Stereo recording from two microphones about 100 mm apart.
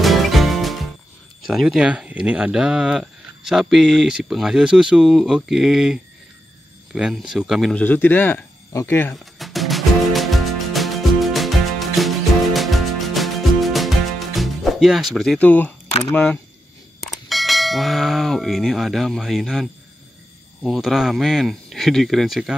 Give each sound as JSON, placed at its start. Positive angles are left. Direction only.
{"t": 0.0, "sound": "music", "side_deg": 0}
{"t": 1.4, "sound": "speech", "side_deg": 0}
{"t": 7.7, "sound": "speech", "side_deg": 15}
{"t": 9.1, "sound": "music", "side_deg": 0}
{"t": 15.3, "sound": "speech", "side_deg": 15}
{"t": 17.0, "sound": "bell", "side_deg": 0}
{"t": 20.6, "sound": "speech", "side_deg": -5}